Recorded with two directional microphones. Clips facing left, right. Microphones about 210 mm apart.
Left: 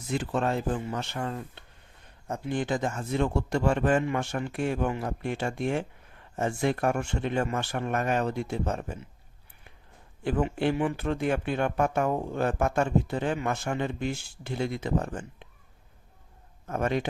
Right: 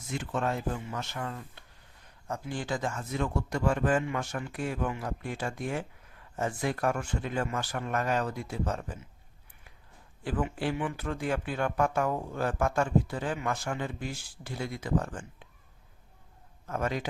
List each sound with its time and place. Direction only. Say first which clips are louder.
0.1 s speech: left 4 dB; 35° left (ahead or behind)
10.2 s speech: left 5 dB; 25° left (ahead or behind)
16.6 s speech: left 4 dB; 25° left (ahead or behind)